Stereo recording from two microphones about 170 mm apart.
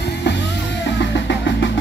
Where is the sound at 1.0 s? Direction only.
90° left.